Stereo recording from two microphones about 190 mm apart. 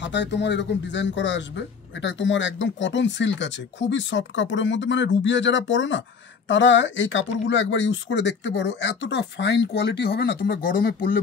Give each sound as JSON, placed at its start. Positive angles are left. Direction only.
{"t": 0.0, "sound": "speech", "side_deg": 65}